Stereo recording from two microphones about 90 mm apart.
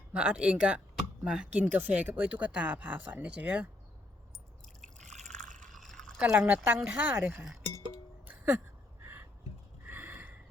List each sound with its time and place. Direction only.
0.1 s speech: 10° right (ahead or behind)
5.7 s pour: 5° left (ahead or behind)
6.3 s speech: 20° right (ahead or behind)
7.3 s cowbell: centre (ahead or behind)
8.3 s music: 15° right (ahead or behind)
9.8 s a sound: 20° right (ahead or behind)